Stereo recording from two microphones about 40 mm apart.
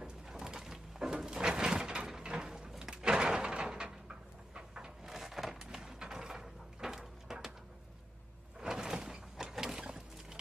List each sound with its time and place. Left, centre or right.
0.3 s a sound: centre
2.8 s door: centre
5.0 s wood: centre
8.5 s sliding door: centre